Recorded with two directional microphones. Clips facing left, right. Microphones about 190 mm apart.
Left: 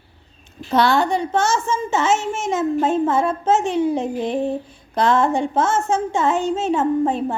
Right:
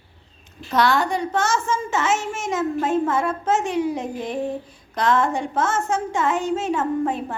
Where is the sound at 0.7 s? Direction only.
30° left (ahead or behind).